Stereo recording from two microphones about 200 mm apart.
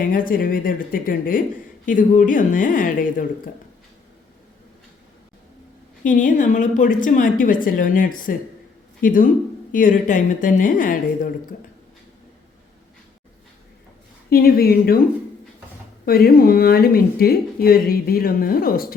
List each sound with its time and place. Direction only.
0.0 s a woman's voice: 45° left (ahead or behind)
6.0 s a woman's voice: 40° left (ahead or behind)
14.3 s speech: 50° left (ahead or behind)
16.0 s speech: 50° left (ahead or behind)